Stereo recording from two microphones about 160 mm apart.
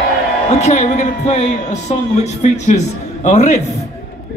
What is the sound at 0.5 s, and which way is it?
A man's voice, 45° left (ahead or behind).